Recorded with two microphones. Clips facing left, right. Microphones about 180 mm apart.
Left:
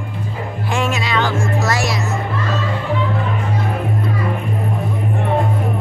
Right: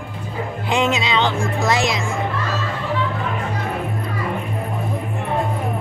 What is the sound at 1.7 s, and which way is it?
Speech, 20° right (ahead or behind).